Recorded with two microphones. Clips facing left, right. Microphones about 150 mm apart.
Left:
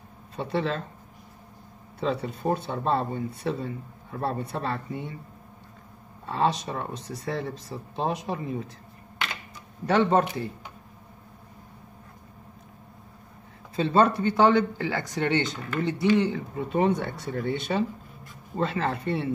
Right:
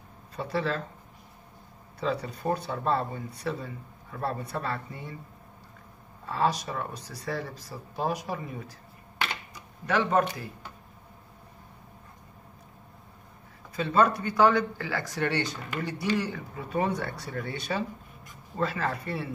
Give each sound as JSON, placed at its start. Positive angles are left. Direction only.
{"t": 0.4, "sound": "speech", "side_deg": 25}
{"t": 2.0, "sound": "speech", "side_deg": 25}
{"t": 6.2, "sound": "speech", "side_deg": 25}
{"t": 9.8, "sound": "speech", "side_deg": 30}
{"t": 13.7, "sound": "speech", "side_deg": 30}